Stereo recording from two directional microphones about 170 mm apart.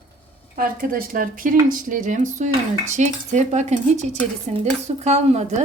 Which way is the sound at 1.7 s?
50° right (ahead or behind).